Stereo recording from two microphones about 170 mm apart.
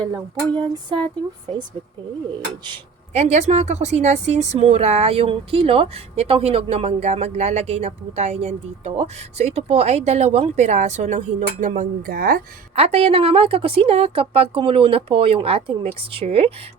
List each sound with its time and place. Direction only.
0.1 s a sound: 25° right (ahead or behind)
3.1 s speech: 40° right (ahead or behind); by 12.4 s 60° right (ahead or behind)
12.7 s speech: 35° right (ahead or behind)